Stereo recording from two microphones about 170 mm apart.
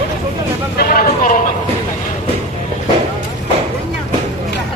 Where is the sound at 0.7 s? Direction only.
60° left (ahead or behind).